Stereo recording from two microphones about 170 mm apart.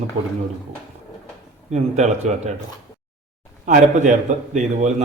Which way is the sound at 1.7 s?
40° right (ahead or behind).